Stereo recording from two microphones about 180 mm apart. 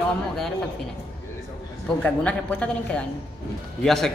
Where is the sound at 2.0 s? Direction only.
10° left (ahead or behind).